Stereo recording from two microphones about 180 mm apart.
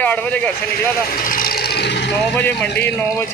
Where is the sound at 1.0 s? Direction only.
50° left (ahead or behind).